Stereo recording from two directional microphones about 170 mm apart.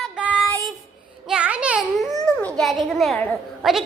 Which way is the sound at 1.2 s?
5° right (ahead or behind).